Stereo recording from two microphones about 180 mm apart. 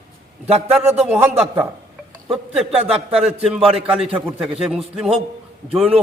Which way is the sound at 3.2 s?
5° right (ahead or behind).